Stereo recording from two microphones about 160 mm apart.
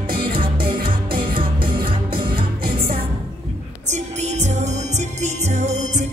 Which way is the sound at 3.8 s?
45° right (ahead or behind).